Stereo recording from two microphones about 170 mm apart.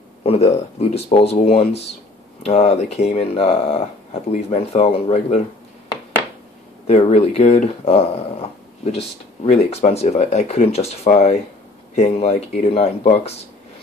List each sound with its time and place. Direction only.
0.2 s speech: 35° left (ahead or behind)
6.9 s speech: 40° left (ahead or behind)